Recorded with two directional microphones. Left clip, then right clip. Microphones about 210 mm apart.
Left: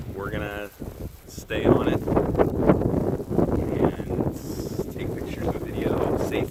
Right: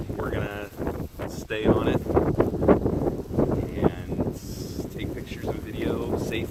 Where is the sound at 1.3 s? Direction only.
30° left (ahead or behind).